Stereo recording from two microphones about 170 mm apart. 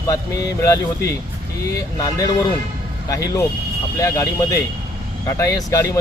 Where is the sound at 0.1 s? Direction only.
20° left (ahead or behind).